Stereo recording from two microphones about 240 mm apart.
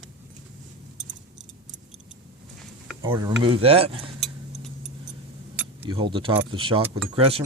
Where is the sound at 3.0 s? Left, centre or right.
Centre.